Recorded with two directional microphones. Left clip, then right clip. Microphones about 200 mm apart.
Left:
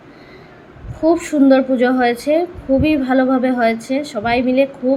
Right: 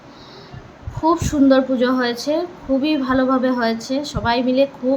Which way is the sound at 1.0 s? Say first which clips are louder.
Left 2 dB; 5° left (ahead or behind).